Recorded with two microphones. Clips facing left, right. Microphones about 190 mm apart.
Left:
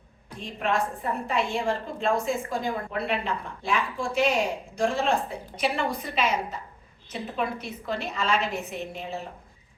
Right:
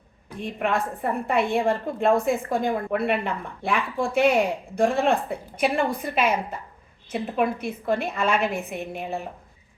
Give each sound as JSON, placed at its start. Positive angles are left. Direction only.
{"t": 0.3, "sound": "a woman's voice", "side_deg": -60}